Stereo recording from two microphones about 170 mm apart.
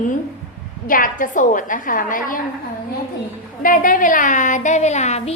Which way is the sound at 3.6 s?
55° left (ahead or behind).